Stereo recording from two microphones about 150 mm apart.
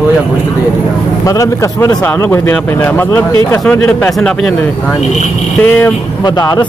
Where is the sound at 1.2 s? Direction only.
20° left (ahead or behind); by 4.5 s 5° left (ahead or behind).